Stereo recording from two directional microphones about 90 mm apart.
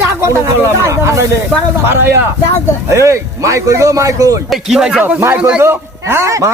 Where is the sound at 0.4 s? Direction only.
35° right (ahead or behind).